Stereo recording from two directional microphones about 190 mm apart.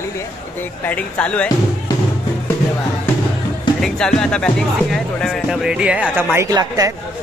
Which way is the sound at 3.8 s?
5° left (ahead or behind).